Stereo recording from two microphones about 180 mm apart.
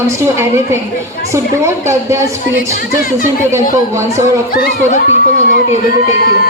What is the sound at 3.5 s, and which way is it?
Speech, 15° right (ahead or behind).